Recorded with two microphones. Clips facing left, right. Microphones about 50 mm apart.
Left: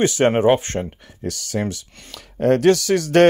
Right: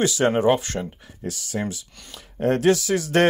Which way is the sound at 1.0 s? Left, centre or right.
Left.